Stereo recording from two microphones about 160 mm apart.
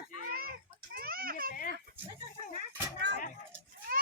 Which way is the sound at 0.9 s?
65° right (ahead or behind).